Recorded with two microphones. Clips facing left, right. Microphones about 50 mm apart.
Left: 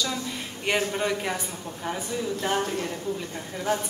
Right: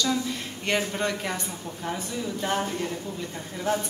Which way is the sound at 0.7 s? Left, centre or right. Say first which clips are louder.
Left 1 dB; centre.